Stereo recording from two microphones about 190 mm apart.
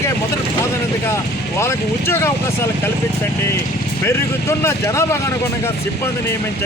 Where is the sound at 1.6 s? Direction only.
15° left (ahead or behind).